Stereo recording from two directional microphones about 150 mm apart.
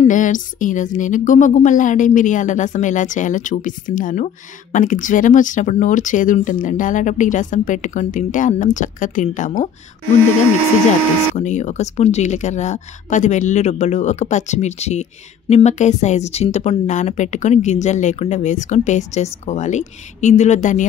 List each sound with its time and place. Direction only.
0.0 s speech: 60° left (ahead or behind)
11.3 s speech: 50° left (ahead or behind)